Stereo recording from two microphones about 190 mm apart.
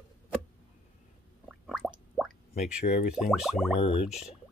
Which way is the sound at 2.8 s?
40° left (ahead or behind).